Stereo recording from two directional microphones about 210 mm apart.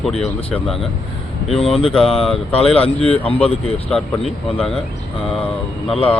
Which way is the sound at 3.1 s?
25° left (ahead or behind).